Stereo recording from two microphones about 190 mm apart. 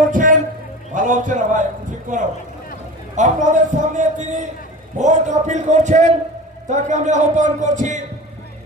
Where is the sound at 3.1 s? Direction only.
40° right (ahead or behind).